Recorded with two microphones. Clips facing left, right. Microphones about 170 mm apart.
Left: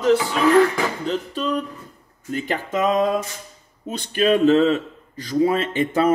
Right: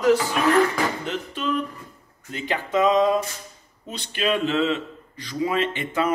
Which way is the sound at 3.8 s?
45° left (ahead or behind).